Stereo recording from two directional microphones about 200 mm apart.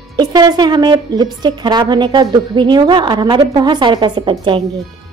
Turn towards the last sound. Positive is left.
turn(degrees=-25)  # may be behind; listen again after turning